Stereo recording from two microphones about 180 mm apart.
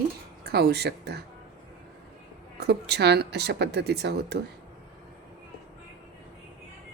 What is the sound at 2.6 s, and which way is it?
Speech, 65° right (ahead or behind).